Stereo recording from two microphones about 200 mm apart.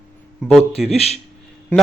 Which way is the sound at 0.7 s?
30° left (ahead or behind).